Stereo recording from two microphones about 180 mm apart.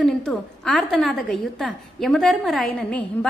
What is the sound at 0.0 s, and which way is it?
A woman's voice, centre (ahead or behind).